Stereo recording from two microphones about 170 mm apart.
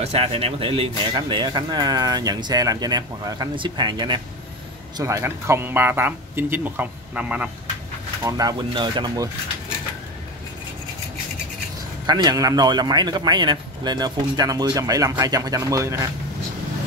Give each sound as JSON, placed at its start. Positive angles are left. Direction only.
{"t": 0.0, "sound": "speech", "side_deg": -35}
{"t": 8.2, "sound": "speech", "side_deg": -20}
{"t": 12.1, "sound": "speech", "side_deg": -25}